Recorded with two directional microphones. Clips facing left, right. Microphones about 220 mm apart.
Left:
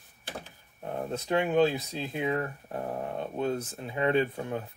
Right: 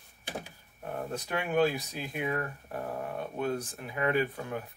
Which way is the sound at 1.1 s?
20° left (ahead or behind).